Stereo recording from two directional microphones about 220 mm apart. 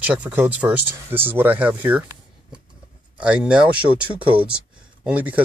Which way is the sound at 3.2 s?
5° right (ahead or behind).